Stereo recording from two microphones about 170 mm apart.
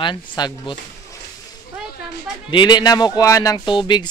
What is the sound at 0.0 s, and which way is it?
Speech, 30° left (ahead or behind).